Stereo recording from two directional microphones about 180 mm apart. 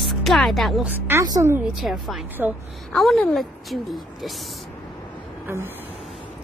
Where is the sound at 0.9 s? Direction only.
10° right (ahead or behind).